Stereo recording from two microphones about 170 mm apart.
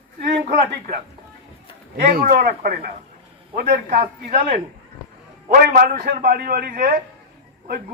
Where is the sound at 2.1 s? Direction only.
60° right (ahead or behind).